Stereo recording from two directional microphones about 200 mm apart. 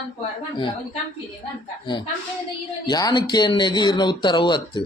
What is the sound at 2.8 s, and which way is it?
Speech, 20° left (ahead or behind).